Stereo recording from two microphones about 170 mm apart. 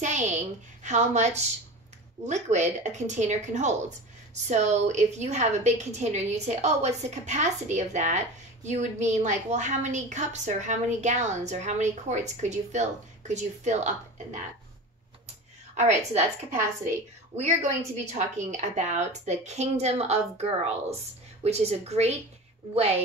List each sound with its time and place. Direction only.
0.0 s a sound: 45° right (ahead or behind)
0.8 s a woman's voice: 45° right (ahead or behind)
15.7 s a woman's voice: 40° right (ahead or behind)
21.5 s a woman's voice: 40° right (ahead or behind)